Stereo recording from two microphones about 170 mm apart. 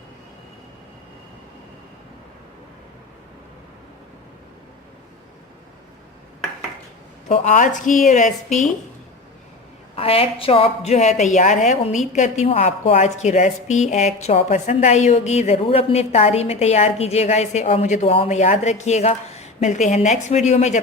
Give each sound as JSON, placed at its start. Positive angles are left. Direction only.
{"t": 7.3, "sound": "a woman's voice", "side_deg": 40}
{"t": 9.9, "sound": "a woman's voice", "side_deg": 35}